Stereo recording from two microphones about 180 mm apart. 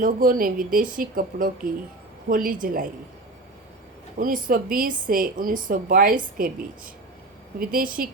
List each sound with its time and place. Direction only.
0.0 s a woman's voice: 50° right (ahead or behind)
4.2 s a woman's voice: 50° right (ahead or behind)